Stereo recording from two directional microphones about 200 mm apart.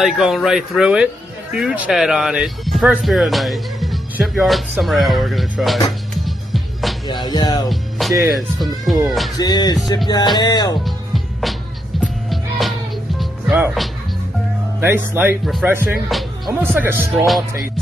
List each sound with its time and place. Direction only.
0.0 s speech: centre (ahead or behind)
6.2 s music: centre (ahead or behind)
7.1 s music: 20° left (ahead or behind)
7.7 s speech: centre (ahead or behind)
9.4 s music: 20° left (ahead or behind)
12.0 s music: centre (ahead or behind)
14.8 s speech: 10° right (ahead or behind)
16.1 s speech: centre (ahead or behind)
16.7 s speech: 10° right (ahead or behind)